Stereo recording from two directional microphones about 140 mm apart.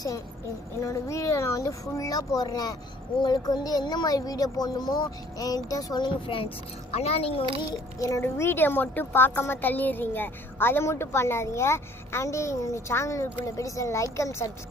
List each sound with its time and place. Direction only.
0.9 s a woman's voice: 20° left (ahead or behind); by 7.4 s 45° left (ahead or behind)
7.9 s a woman's voice: 20° left (ahead or behind)